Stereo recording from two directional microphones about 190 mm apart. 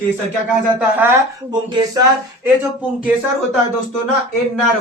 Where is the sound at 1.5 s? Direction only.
25° right (ahead or behind).